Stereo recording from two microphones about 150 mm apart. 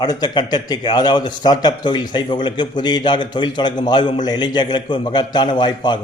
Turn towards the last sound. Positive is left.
turn(degrees=30)  # may be behind; listen again after turning